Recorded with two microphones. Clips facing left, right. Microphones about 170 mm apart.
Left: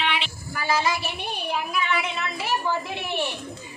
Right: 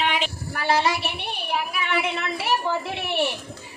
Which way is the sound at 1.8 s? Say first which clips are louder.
Right 2 dB; 60° right (ahead or behind).